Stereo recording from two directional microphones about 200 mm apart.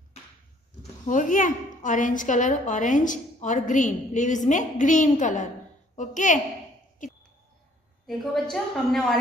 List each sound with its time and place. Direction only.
1.0 s a woman's voice: 40° left (ahead or behind)
7.0 s a sound: 40° left (ahead or behind)
8.1 s a woman's voice: centre (ahead or behind)